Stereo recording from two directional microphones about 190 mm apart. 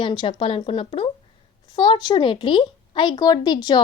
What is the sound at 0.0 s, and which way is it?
Speech, 25° left (ahead or behind).